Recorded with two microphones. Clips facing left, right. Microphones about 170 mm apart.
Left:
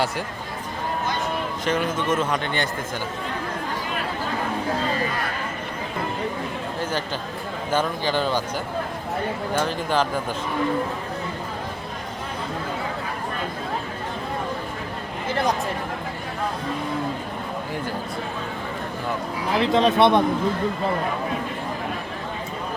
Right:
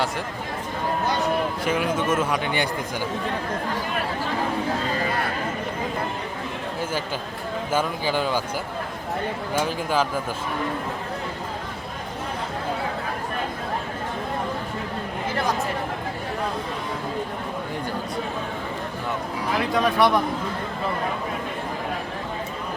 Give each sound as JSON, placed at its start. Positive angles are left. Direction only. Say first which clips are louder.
{"t": 1.6, "sound": "speech", "louder": "left 3 dB", "side_deg": -5}
{"t": 7.7, "sound": "speech", "louder": "left 1 dB", "side_deg": -10}
{"t": 9.6, "sound": "speech", "louder": "even", "side_deg": -5}
{"t": 19.5, "sound": "speech", "louder": "left 3 dB", "side_deg": 25}